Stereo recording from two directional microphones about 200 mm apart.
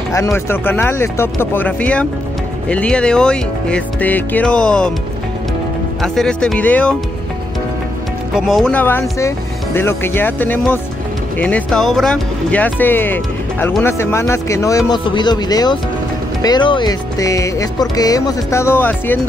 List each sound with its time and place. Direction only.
0.1 s speech: 15° left (ahead or behind)
6.1 s speech: 5° left (ahead or behind)
8.4 s speech: centre (ahead or behind)